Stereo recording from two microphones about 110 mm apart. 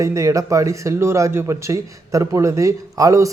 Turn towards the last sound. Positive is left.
turn(degrees=-30)  # may be behind; listen again after turning